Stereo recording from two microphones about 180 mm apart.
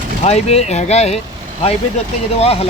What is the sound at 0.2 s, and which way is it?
Speech, 35° left (ahead or behind).